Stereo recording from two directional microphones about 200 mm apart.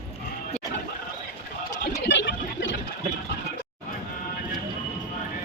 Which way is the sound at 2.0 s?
60° left (ahead or behind).